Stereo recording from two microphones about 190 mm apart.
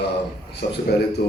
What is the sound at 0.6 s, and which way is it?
Speech, 60° left (ahead or behind).